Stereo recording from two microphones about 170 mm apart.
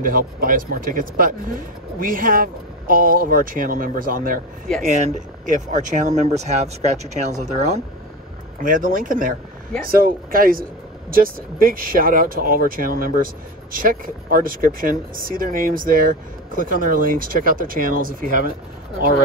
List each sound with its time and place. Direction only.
0.0 s speech: 55° right (ahead or behind); by 7.8 s 40° right (ahead or behind)
8.6 s speech: 50° right (ahead or behind)